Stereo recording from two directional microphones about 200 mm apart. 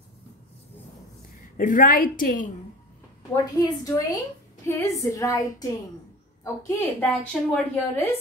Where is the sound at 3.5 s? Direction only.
15° left (ahead or behind).